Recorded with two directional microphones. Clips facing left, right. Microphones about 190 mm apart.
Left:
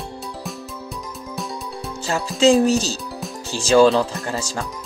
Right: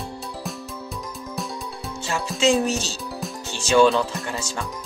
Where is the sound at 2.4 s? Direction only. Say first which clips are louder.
Left 6 dB; 35° left (ahead or behind).